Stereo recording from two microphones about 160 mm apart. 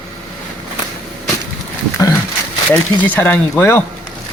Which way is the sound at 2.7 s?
10° left (ahead or behind).